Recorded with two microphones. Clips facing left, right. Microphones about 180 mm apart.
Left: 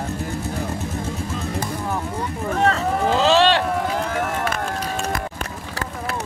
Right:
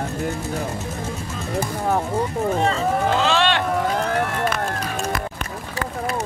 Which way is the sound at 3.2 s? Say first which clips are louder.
Left 3 dB; 35° left (ahead or behind).